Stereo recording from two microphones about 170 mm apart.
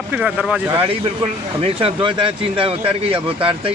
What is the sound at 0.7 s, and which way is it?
Speech, 30° right (ahead or behind).